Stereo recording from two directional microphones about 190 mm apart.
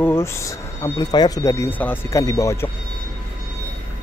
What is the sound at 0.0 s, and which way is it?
Speech, 10° left (ahead or behind).